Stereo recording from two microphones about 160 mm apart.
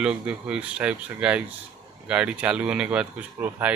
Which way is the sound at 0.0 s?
5° right (ahead or behind).